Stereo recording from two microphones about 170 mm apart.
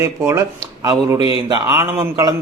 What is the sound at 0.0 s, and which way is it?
A man's voice, 15° right (ahead or behind).